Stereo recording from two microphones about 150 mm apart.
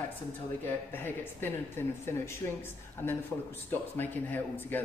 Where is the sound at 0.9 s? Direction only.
15° left (ahead or behind).